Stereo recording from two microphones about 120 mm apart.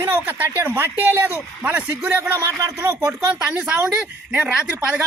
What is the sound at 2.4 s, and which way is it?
Speech, 25° right (ahead or behind).